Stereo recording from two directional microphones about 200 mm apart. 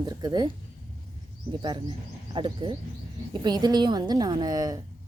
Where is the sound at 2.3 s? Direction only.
25° right (ahead or behind).